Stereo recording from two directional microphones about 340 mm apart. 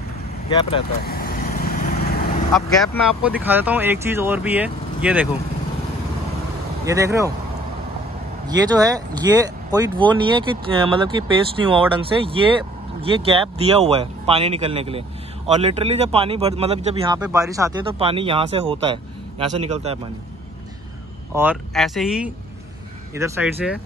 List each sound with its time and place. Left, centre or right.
0.6 s speech: centre
1.0 s vehicle: left
2.5 s speech: centre
6.9 s speech: centre
8.5 s speech: centre
21.4 s speech: centre